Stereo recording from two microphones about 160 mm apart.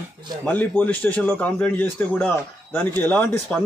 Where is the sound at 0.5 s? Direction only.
10° left (ahead or behind).